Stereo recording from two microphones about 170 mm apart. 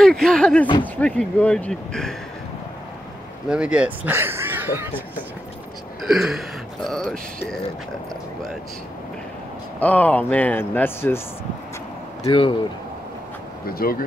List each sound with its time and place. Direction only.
0.0 s speech: centre (ahead or behind)
3.4 s speech: 5° right (ahead or behind)
6.0 s speech: 5° right (ahead or behind)
9.8 s speech: 10° left (ahead or behind)
12.2 s speech: 30° left (ahead or behind)
13.7 s speech: 60° left (ahead or behind)